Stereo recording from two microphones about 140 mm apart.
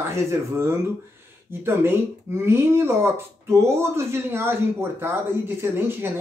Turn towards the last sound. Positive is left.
turn(degrees=-15)  # may be behind; listen again after turning